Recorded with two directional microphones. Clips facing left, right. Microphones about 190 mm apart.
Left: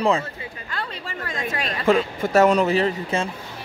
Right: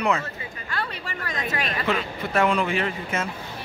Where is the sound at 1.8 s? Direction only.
45° left (ahead or behind).